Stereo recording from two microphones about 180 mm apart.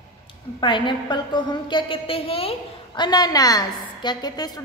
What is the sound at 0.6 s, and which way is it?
A woman's voice, 25° left (ahead or behind).